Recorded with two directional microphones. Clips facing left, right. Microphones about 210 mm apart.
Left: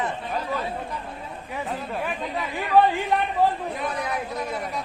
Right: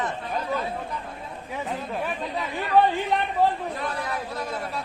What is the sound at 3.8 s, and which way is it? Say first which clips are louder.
Speech: left 2 dB; 20° left (ahead or behind).